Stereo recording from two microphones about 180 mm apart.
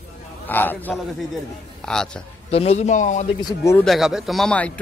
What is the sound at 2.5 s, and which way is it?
Speech, 35° left (ahead or behind).